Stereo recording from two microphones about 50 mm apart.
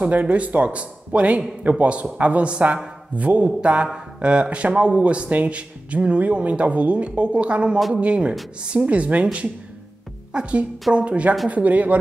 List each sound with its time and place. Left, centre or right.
0.0 s speech: right